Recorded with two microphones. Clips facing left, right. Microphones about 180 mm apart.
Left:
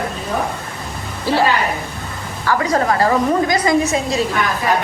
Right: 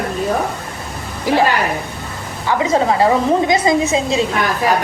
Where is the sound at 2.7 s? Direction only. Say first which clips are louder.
Right 3 dB; centre (ahead or behind).